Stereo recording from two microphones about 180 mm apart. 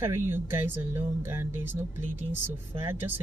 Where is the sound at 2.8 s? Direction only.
10° right (ahead or behind).